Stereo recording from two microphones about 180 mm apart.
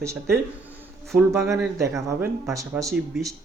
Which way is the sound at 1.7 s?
15° right (ahead or behind).